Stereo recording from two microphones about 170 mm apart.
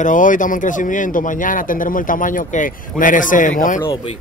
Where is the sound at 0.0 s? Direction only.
50° left (ahead or behind).